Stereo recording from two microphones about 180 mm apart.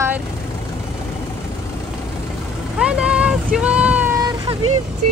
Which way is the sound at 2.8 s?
5° right (ahead or behind).